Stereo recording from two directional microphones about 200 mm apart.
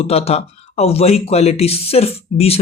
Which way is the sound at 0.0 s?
30° left (ahead or behind).